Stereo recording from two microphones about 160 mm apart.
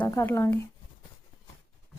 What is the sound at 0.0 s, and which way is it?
Speech, 15° left (ahead or behind).